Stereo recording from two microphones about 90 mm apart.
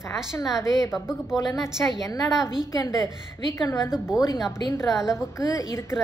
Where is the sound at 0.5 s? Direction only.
40° left (ahead or behind).